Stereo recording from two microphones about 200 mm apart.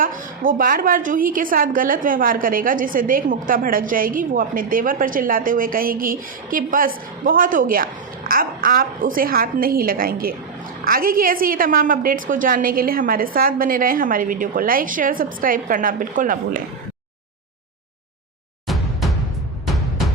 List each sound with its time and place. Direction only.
0.0 s a woman's voice: 45° right (ahead or behind)